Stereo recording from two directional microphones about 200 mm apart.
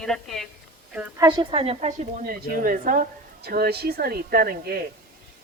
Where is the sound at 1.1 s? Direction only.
20° right (ahead or behind).